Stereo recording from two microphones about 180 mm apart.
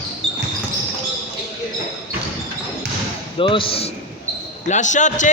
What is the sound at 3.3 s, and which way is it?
Speech, 30° left (ahead or behind).